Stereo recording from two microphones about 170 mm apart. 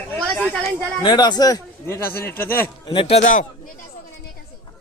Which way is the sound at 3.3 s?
55° left (ahead or behind).